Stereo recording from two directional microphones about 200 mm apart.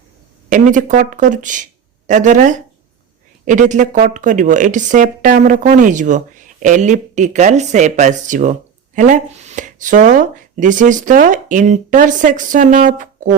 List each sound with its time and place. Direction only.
0.5 s a man's voice: 40° right (ahead or behind)